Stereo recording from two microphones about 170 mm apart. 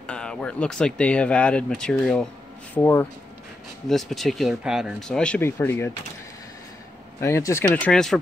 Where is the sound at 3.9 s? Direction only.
Centre (ahead or behind).